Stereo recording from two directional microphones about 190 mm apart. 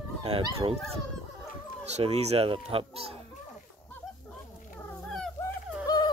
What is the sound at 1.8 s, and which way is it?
Speech, 35° right (ahead or behind).